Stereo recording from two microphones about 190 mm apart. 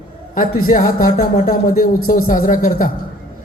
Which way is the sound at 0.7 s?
45° left (ahead or behind).